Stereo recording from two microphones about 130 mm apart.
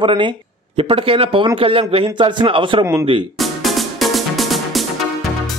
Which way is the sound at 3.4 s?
Centre (ahead or behind).